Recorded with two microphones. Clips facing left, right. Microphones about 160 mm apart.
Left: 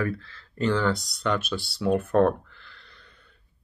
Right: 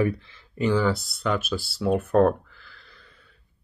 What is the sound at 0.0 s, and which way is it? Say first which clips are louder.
Speech: right 4 dB; 15° right (ahead or behind).